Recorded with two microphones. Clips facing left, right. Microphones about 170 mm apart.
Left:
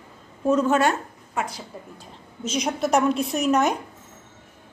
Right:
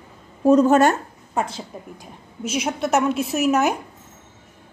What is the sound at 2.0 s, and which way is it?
A woman's voice, 10° right (ahead or behind).